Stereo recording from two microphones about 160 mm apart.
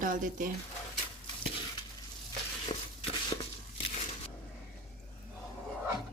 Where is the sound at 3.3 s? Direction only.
25° left (ahead or behind).